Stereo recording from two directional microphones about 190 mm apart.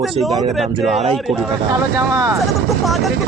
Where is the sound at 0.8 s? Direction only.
30° right (ahead or behind).